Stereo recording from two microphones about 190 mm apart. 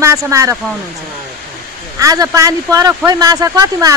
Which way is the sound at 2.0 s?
20° right (ahead or behind).